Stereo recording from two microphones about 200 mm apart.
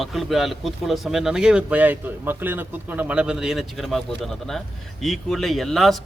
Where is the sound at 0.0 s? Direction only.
Centre (ahead or behind).